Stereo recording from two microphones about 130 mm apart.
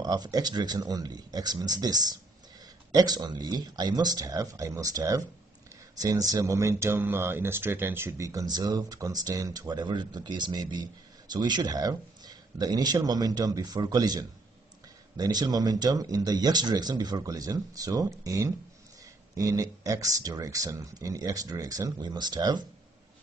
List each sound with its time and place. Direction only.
0.0 s speech: 30° right (ahead or behind)